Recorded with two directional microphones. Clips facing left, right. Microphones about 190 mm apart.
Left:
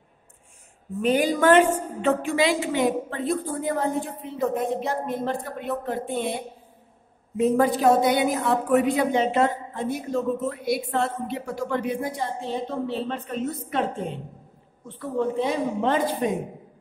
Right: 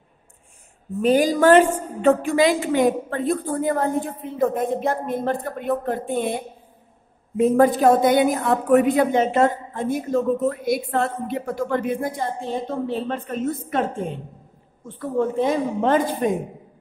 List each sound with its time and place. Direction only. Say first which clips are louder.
1.0 s a woman's voice: right 4 dB; 35° right (ahead or behind)